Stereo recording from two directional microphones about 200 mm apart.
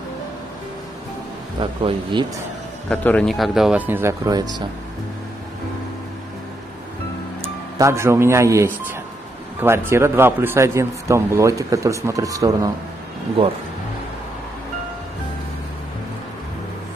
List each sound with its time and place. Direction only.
1.6 s a man's voice: 25° right (ahead or behind)
2.9 s speech: 5° left (ahead or behind); by 4.6 s 20° right (ahead or behind)
7.7 s a man's voice: 15° right (ahead or behind)